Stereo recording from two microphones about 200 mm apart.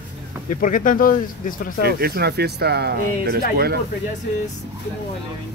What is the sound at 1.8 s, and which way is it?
Speech, 50° right (ahead or behind).